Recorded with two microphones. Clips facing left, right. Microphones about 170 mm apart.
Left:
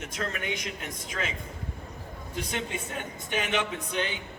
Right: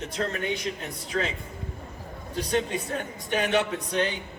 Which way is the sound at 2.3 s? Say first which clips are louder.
Right 7 dB; 35° right (ahead or behind).